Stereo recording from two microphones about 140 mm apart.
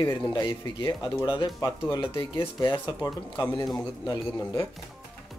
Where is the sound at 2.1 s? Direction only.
35° left (ahead or behind).